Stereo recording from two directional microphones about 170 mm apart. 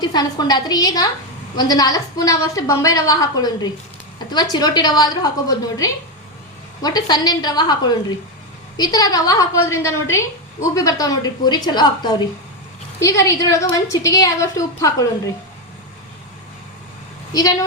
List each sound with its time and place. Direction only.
0.0 s a woman's voice: 25° left (ahead or behind)
8.8 s a woman's voice: 20° left (ahead or behind)